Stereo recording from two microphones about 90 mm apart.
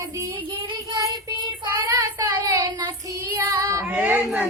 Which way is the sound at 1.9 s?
40° right (ahead or behind).